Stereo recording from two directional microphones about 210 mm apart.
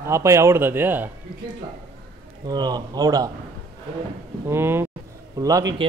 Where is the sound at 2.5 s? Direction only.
20° right (ahead or behind).